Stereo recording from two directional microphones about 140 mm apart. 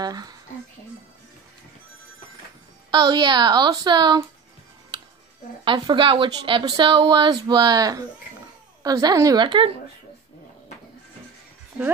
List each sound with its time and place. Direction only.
0.0 s a woman's voice: 30° right (ahead or behind)
2.9 s a woman's voice: 30° right (ahead or behind)
5.7 s a woman's voice: 35° right (ahead or behind)